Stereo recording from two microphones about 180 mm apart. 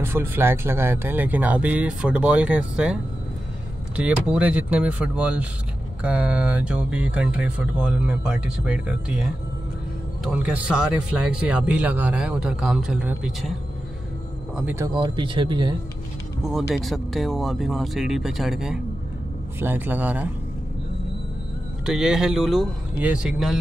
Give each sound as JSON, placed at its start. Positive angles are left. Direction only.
{"t": 0.0, "sound": "speech", "side_deg": -10}
{"t": 14.6, "sound": "speech", "side_deg": -10}
{"t": 15.0, "sound": "speech", "side_deg": -25}
{"t": 16.4, "sound": "speech", "side_deg": 0}
{"t": 21.8, "sound": "speech", "side_deg": -5}